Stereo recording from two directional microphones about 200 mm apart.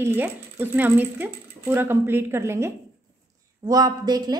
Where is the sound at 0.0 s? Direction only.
10° right (ahead or behind).